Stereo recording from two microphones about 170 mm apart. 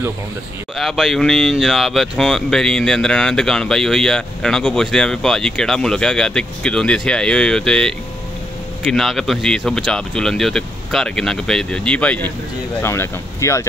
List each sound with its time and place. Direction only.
0.7 s speech: centre (ahead or behind); by 13.7 s 15° left (ahead or behind)